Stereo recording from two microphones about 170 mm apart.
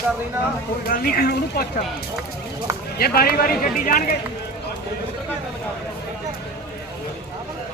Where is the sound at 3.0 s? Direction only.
65° left (ahead or behind).